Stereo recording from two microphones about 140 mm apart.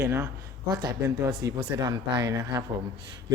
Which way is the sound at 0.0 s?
15° right (ahead or behind).